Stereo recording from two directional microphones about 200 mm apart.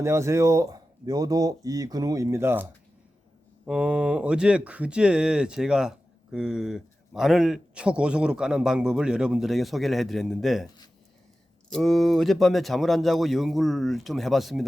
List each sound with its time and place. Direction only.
0.0 s speech: 15° right (ahead or behind)
11.7 s speech: centre (ahead or behind)